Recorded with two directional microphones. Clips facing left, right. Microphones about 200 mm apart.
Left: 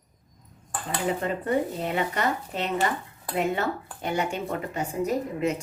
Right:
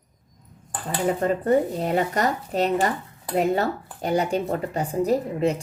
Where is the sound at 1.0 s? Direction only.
40° right (ahead or behind).